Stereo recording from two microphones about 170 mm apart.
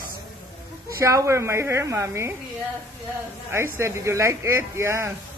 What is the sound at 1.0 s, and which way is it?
Speech, 20° right (ahead or behind).